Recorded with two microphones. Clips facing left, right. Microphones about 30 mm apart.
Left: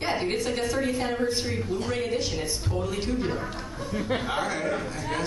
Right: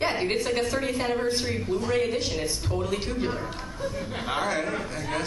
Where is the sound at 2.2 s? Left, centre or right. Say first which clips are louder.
Right 1 dB; right.